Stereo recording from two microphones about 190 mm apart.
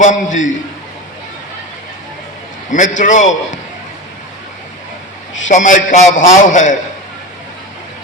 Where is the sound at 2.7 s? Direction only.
40° left (ahead or behind).